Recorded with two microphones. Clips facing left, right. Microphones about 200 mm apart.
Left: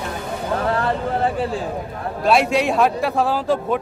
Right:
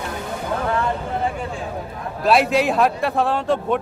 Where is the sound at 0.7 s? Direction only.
35° left (ahead or behind).